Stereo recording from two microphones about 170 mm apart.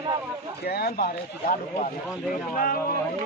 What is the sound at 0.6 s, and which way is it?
Speech, 65° left (ahead or behind).